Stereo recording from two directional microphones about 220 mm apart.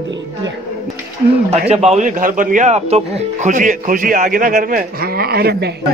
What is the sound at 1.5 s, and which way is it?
A man's voice, 30° right (ahead or behind).